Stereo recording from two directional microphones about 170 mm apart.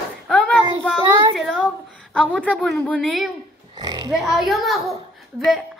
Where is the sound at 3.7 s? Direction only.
25° right (ahead or behind).